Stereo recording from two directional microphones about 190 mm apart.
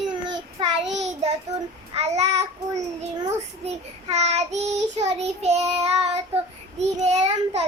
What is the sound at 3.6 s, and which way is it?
Child singing, 35° right (ahead or behind).